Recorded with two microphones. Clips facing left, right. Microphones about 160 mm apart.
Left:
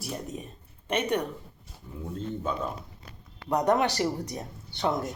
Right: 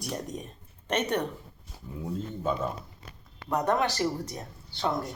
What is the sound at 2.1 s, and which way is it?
Speech, 5° right (ahead or behind).